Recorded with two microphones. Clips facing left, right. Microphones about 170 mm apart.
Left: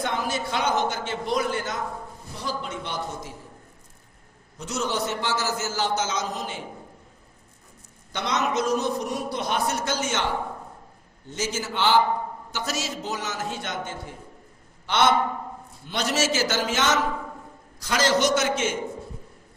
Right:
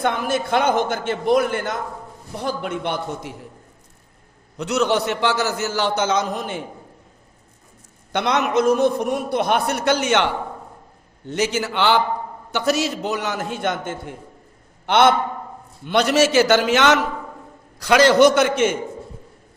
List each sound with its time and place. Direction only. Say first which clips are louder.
0.0 s a man's voice: right 6 dB; 55° right (ahead or behind)
4.5 s a man's voice: right 8 dB; 65° right (ahead or behind)
8.1 s a man's voice: right 6 dB; 60° right (ahead or behind)